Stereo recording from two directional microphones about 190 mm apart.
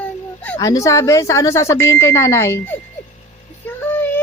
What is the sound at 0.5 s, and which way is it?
A woman's voice, 20° left (ahead or behind).